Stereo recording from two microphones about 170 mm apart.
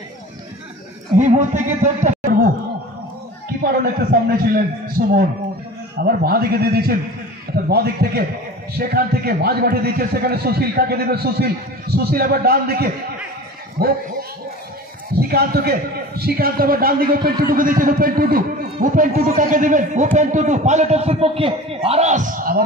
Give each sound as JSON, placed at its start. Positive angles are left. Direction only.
{"t": 1.1, "sound": "a man's voice", "side_deg": -45}
{"t": 3.6, "sound": "a man's voice", "side_deg": -60}
{"t": 15.1, "sound": "a man's voice", "side_deg": -65}